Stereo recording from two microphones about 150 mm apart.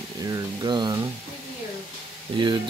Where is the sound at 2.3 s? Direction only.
35° right (ahead or behind).